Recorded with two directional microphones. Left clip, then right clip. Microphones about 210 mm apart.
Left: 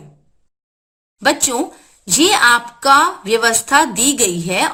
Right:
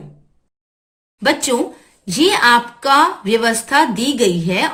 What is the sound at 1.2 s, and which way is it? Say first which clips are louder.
A woman's voice: even; 55° left (ahead or behind).